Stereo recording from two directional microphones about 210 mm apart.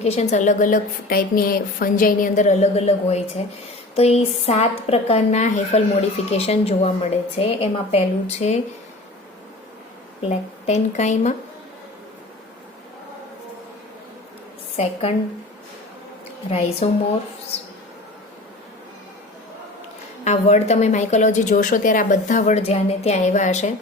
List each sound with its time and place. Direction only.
0.0 s a woman's voice: 30° left (ahead or behind)
10.2 s a woman's voice: 30° left (ahead or behind)
16.5 s a woman's voice: 30° left (ahead or behind)
20.2 s a woman's voice: 30° left (ahead or behind)